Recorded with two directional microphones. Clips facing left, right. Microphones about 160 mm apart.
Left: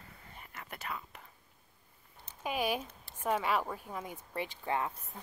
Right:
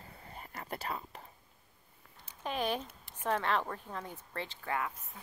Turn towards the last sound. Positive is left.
turn(degrees=20)  # may be behind; listen again after turning